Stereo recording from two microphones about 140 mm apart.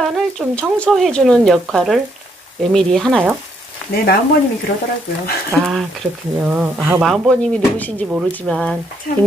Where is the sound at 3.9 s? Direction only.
90° left.